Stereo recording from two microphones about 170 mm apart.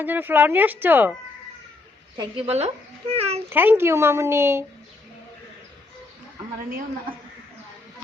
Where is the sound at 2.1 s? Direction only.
35° right (ahead or behind).